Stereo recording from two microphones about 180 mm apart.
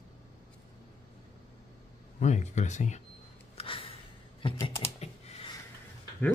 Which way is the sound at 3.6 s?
30° left (ahead or behind).